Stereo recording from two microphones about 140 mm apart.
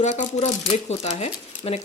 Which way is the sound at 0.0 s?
55° left (ahead or behind).